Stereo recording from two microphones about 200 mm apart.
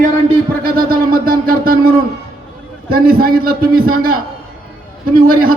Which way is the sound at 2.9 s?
45° right (ahead or behind).